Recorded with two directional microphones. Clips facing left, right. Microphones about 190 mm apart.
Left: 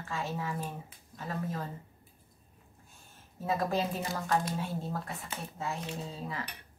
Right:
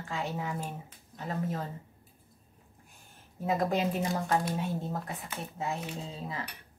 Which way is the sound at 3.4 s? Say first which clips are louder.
Right 2 dB; 20° right (ahead or behind).